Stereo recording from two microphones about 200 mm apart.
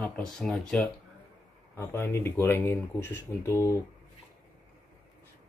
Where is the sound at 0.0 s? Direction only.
5° left (ahead or behind).